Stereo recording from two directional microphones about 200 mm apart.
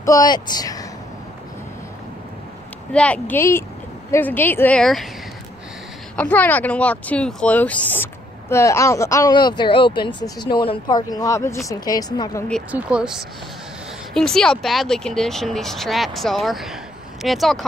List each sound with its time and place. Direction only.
0.0 s speech: 15° left (ahead or behind)
2.9 s speech: 5° left (ahead or behind)
6.1 s speech: 10° left (ahead or behind)
12.7 s speech: 5° right (ahead or behind)